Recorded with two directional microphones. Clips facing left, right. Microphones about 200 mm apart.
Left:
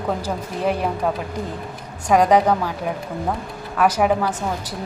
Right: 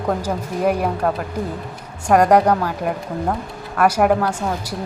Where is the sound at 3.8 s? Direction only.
10° right (ahead or behind).